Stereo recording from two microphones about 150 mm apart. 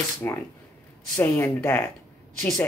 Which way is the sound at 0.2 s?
15° left (ahead or behind).